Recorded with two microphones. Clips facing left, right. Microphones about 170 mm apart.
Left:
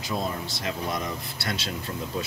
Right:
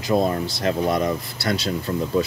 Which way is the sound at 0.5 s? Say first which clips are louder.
Right 9 dB; 50° right (ahead or behind).